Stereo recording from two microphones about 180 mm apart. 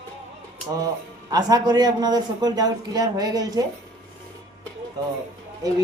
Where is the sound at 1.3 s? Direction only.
20° right (ahead or behind).